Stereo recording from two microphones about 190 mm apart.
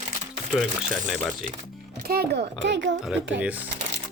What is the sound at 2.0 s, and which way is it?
Speech, 55° right (ahead or behind).